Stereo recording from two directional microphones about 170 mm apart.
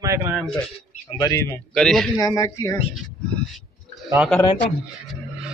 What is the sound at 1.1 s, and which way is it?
Speech, 20° left (ahead or behind).